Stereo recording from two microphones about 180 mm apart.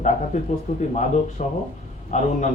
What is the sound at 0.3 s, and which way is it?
A man's voice, 40° left (ahead or behind).